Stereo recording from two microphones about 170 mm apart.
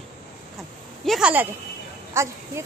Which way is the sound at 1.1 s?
5° right (ahead or behind).